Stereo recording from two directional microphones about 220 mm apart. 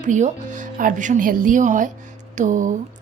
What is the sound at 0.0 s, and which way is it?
A woman's voice, 35° right (ahead or behind).